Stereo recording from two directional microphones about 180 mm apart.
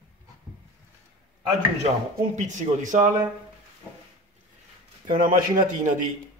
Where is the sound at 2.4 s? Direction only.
40° right (ahead or behind).